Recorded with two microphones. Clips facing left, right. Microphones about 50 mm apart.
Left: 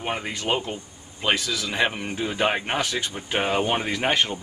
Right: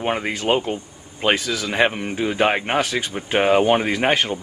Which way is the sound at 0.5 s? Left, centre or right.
Centre.